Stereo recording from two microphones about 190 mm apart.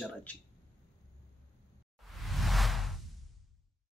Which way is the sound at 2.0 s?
Centre (ahead or behind).